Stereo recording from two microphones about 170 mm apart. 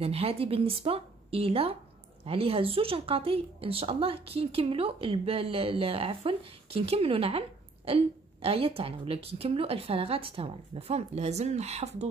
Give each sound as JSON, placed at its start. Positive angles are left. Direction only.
{"t": 0.0, "sound": "speech", "side_deg": -35}